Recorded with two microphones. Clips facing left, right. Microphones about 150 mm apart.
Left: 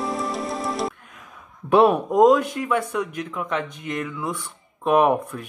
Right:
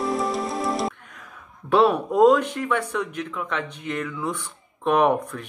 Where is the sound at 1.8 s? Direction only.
15° left (ahead or behind).